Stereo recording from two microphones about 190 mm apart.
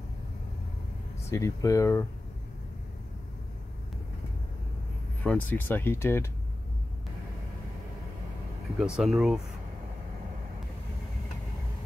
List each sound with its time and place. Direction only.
1.3 s speech: 15° left (ahead or behind)
5.2 s speech: 10° left (ahead or behind)
8.7 s speech: 5° right (ahead or behind)